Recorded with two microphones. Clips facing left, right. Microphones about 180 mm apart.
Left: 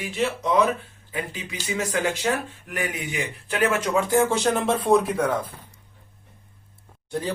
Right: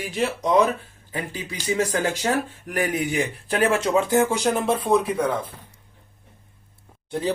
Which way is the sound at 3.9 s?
20° right (ahead or behind).